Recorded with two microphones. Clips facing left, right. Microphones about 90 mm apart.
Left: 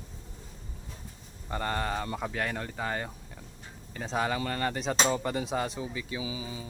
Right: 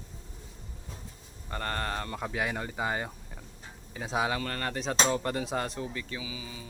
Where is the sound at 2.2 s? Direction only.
5° right (ahead or behind).